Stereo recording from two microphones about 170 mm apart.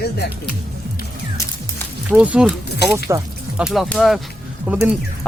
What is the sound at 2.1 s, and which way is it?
Speech, 5° right (ahead or behind).